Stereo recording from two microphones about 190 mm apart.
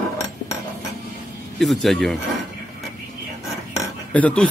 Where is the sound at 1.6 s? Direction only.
Centre (ahead or behind).